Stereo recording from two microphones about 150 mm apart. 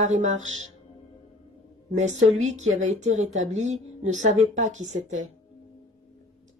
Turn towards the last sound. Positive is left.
turn(degrees=-55)  # may be behind; listen again after turning